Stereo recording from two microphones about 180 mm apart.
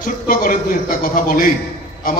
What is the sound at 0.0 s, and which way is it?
A man's voice, 50° left (ahead or behind).